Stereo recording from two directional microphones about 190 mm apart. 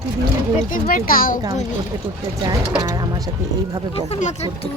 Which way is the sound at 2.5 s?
20° right (ahead or behind).